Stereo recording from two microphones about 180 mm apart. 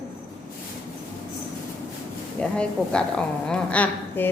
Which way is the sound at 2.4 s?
5° left (ahead or behind).